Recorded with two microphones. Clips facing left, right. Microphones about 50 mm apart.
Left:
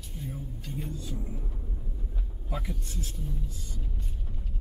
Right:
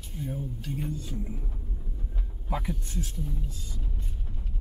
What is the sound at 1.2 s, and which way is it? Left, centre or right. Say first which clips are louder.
Rumble: right 2 dB; centre.